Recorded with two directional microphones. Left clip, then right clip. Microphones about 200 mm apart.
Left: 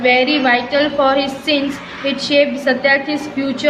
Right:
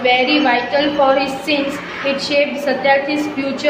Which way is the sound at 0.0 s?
25° left (ahead or behind).